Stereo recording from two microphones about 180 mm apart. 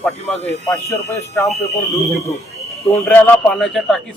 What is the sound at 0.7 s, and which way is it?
Speech, 15° left (ahead or behind).